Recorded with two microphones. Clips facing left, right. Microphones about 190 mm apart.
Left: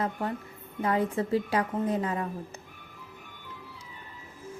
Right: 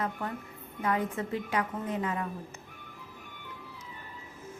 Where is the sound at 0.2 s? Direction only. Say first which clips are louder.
Left 4 dB; 30° left (ahead or behind).